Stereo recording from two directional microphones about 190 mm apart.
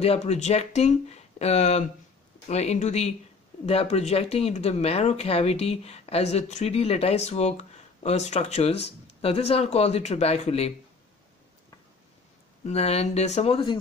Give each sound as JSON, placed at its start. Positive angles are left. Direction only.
{"t": 0.0, "sound": "speech", "side_deg": 35}
{"t": 12.6, "sound": "speech", "side_deg": 35}